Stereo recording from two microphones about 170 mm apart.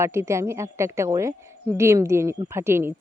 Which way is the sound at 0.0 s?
15° right (ahead or behind).